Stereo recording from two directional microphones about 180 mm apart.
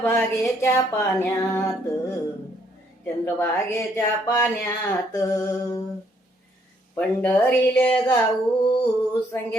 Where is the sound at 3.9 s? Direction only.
20° left (ahead or behind).